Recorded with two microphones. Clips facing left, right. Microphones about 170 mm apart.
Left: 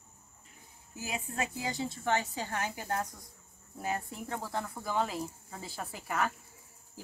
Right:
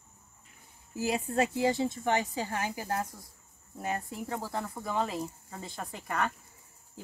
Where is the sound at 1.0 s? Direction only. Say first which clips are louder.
Right 8 dB; 35° right (ahead or behind).